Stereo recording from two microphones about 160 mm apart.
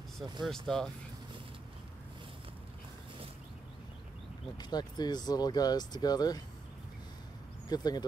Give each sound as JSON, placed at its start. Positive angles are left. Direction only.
{"t": 0.5, "sound": "speech", "side_deg": 5}
{"t": 4.6, "sound": "speech", "side_deg": 25}
{"t": 7.7, "sound": "speech", "side_deg": 25}